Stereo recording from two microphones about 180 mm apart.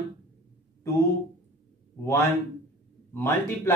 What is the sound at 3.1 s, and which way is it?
Speech, 10° left (ahead or behind).